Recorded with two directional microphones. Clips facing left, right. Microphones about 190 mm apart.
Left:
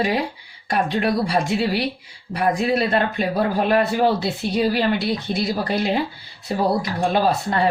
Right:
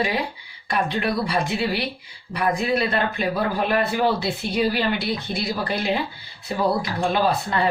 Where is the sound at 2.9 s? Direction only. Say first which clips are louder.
Left 3 dB; 40° left (ahead or behind).